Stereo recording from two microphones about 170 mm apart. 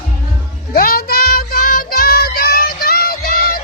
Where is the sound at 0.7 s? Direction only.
60° left (ahead or behind).